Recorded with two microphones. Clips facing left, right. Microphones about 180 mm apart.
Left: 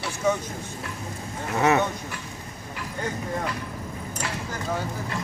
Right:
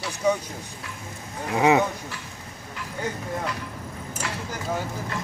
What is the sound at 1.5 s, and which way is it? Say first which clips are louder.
Speech: right 2 dB; 15° right (ahead or behind).